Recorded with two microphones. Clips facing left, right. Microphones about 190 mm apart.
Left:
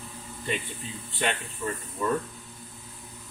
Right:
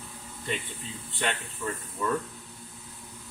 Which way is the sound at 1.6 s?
20° left (ahead or behind).